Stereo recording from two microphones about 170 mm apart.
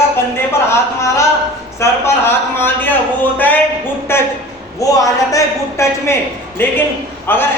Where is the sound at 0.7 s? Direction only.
15° left (ahead or behind).